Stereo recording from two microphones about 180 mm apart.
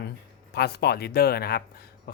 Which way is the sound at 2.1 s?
55° left (ahead or behind).